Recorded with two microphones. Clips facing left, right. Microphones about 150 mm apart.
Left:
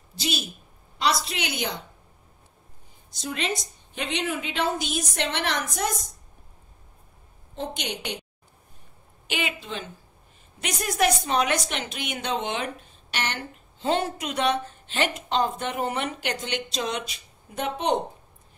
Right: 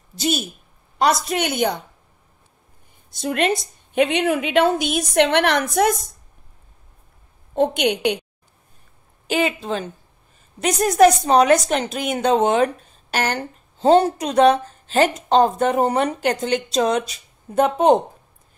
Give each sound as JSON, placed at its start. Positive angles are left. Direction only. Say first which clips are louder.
{"t": 0.2, "sound": "a woman's voice", "louder": "right 8 dB", "side_deg": -50}
{"t": 3.1, "sound": "a woman's voice", "louder": "right 9 dB", "side_deg": -55}
{"t": 7.5, "sound": "a woman's voice", "louder": "right 13 dB", "side_deg": -60}
{"t": 9.3, "sound": "a woman's voice", "louder": "right 10 dB", "side_deg": -40}